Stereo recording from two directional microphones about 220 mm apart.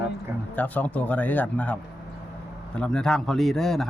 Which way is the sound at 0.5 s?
5° left (ahead or behind).